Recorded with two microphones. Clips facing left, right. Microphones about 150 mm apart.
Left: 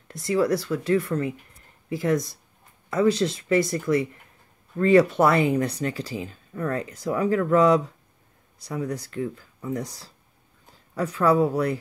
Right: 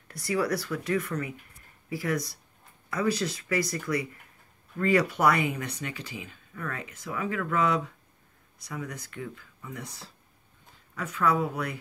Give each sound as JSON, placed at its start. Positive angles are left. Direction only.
{"t": 0.1, "sound": "speech", "side_deg": 25}